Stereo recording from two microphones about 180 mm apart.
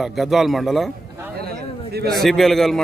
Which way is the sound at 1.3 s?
60° right (ahead or behind).